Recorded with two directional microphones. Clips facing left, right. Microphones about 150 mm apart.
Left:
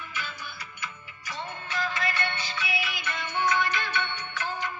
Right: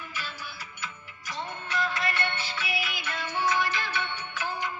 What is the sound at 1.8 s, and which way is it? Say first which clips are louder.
Music: even; centre (ahead or behind).